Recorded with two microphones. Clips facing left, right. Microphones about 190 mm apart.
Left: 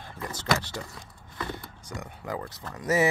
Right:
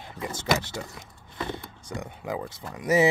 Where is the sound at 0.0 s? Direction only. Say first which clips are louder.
Right 2 dB; 15° right (ahead or behind).